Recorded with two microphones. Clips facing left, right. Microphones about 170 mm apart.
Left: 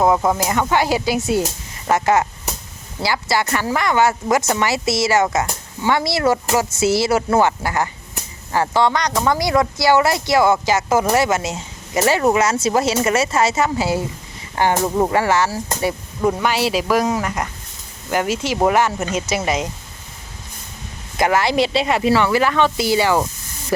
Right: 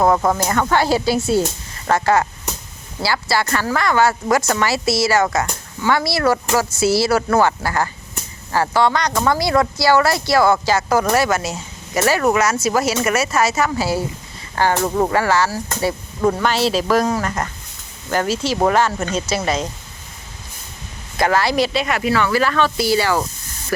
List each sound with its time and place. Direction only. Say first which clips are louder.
0.0 s speech: even; 10° left (ahead or behind)
14.8 s speech: even; 5° left (ahead or behind)
15.1 s speech: even; 20° left (ahead or behind)
21.2 s speech: even; 20° left (ahead or behind)